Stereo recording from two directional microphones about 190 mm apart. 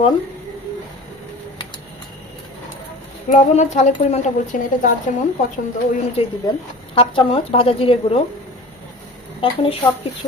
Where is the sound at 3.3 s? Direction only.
40° left (ahead or behind).